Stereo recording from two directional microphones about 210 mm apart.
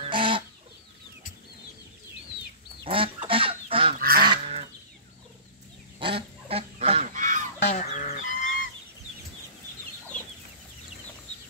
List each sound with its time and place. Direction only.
0.0 s chicken: 25° right (ahead or behind)
2.8 s goose: 25° right (ahead or behind)
5.9 s goose: 25° right (ahead or behind)
7.6 s fowl: 35° left (ahead or behind)
8.1 s goose: 40° left (ahead or behind)